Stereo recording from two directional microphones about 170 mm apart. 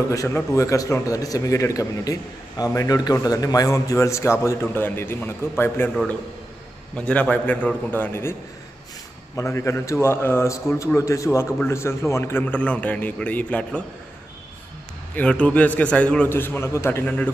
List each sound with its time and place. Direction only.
0.1 s a man's voice: 20° left (ahead or behind)
7.0 s a man's voice: 5° left (ahead or behind)
9.4 s a man's voice: 15° left (ahead or behind)
15.1 s a man's voice: 5° left (ahead or behind)